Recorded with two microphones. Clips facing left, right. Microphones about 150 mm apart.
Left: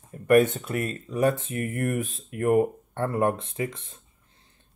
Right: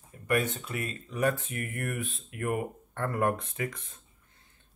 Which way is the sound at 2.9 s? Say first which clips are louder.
Left 4 dB; 25° left (ahead or behind).